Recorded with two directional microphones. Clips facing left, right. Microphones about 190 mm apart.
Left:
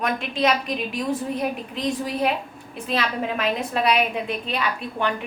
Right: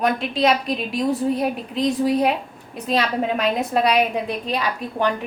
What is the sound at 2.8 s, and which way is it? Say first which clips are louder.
A woman's voice: right 4 dB; 35° right (ahead or behind).